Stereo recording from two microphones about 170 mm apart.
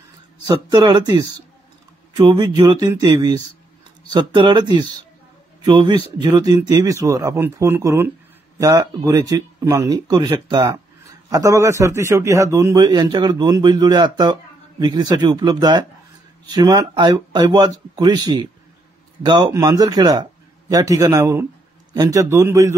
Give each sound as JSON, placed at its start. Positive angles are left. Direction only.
{"t": 0.5, "sound": "a man's voice", "side_deg": -25}